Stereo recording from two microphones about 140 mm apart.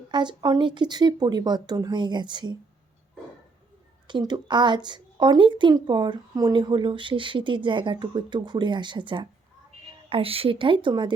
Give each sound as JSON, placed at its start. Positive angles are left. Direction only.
{"t": 0.1, "sound": "speech", "side_deg": -30}
{"t": 4.0, "sound": "speech", "side_deg": -30}